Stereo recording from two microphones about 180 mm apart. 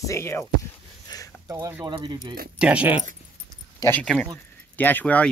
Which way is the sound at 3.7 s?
10° left (ahead or behind).